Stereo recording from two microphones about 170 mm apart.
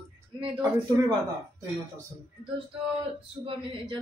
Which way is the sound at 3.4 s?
30° right (ahead or behind).